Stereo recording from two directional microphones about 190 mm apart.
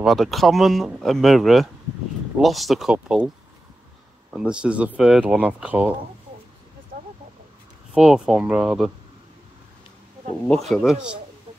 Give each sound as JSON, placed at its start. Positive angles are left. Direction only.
{"t": 0.0, "sound": "speech", "side_deg": 0}
{"t": 4.3, "sound": "speech", "side_deg": -5}
{"t": 6.9, "sound": "a sound", "side_deg": -50}
{"t": 7.9, "sound": "speech", "side_deg": -5}
{"t": 10.5, "sound": "speech", "side_deg": 0}